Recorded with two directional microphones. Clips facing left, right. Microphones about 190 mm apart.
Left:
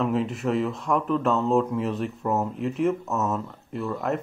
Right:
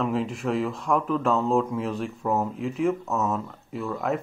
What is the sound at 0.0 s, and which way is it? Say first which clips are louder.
Speech: left 1 dB; centre (ahead or behind).